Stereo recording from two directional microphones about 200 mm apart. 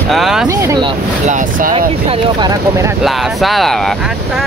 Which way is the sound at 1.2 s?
40° right (ahead or behind).